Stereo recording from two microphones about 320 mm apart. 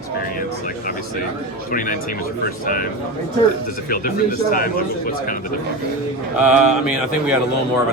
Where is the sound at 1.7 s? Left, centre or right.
Left.